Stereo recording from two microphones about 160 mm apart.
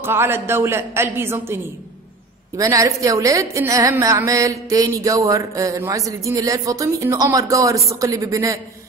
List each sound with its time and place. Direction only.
0.0 s a woman's voice: 15° right (ahead or behind)